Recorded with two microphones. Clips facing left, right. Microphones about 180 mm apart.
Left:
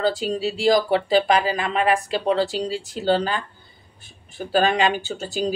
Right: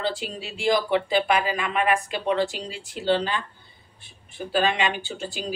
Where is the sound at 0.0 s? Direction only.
40° left (ahead or behind).